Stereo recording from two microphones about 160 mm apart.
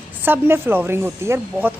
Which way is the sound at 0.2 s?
15° right (ahead or behind).